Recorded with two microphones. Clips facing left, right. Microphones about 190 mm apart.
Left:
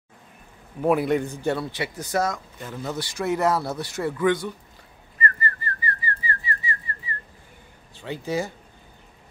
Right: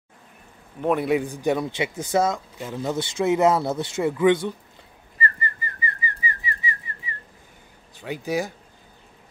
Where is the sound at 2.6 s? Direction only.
15° right (ahead or behind).